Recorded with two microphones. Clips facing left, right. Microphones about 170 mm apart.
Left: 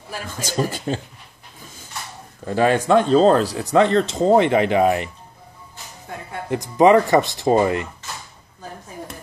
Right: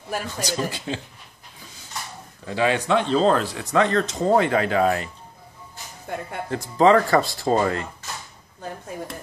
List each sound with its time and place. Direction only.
0.4 s speech: 45° left (ahead or behind)
2.4 s speech: 45° left (ahead or behind); by 5.1 s 20° left (ahead or behind)
6.5 s speech: 15° left (ahead or behind)